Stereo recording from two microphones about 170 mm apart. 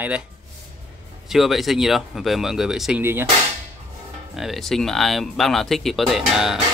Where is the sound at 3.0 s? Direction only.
15° right (ahead or behind).